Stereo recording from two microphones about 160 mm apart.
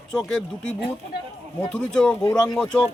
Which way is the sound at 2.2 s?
20° left (ahead or behind).